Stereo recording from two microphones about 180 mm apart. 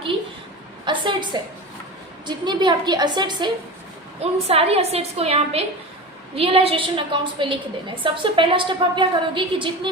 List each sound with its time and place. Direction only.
0.9 s a woman's voice: 25° right (ahead or behind)
4.2 s a woman's voice: 35° right (ahead or behind)